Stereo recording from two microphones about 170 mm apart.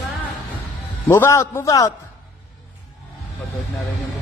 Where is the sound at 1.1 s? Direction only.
15° left (ahead or behind).